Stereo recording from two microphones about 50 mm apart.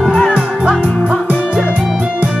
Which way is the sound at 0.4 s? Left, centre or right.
Centre.